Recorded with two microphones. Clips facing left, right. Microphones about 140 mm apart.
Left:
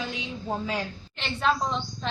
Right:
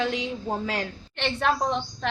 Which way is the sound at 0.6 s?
65° right (ahead or behind).